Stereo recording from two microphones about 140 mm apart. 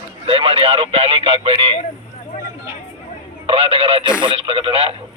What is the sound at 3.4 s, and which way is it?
Speech, 40° right (ahead or behind).